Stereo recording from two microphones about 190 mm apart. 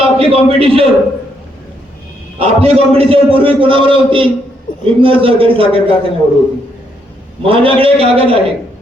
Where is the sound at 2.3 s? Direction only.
30° right (ahead or behind).